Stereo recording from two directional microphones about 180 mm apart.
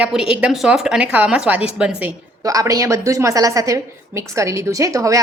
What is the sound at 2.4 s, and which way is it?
A woman's voice, 20° right (ahead or behind).